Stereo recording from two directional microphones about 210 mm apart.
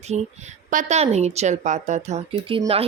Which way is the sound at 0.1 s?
30° right (ahead or behind).